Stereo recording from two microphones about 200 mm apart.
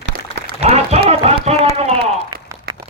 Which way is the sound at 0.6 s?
30° right (ahead or behind).